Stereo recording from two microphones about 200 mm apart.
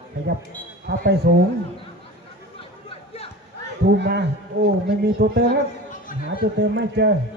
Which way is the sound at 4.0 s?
60° right (ahead or behind).